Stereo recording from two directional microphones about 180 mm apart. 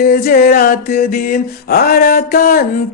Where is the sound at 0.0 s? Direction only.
55° left (ahead or behind).